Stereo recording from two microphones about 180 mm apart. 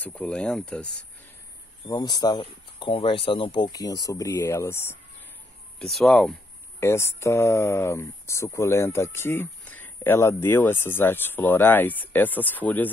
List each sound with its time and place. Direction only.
0.0 s speech: 5° left (ahead or behind)
1.9 s speech: 20° left (ahead or behind)
5.8 s speech: centre (ahead or behind)
6.8 s speech: 15° left (ahead or behind)